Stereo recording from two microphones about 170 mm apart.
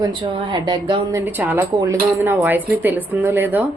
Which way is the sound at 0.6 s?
25° right (ahead or behind).